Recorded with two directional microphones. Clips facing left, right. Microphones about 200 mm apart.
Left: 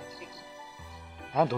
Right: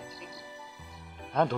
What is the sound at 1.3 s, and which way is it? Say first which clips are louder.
Speech: left 1 dB; 5° left (ahead or behind).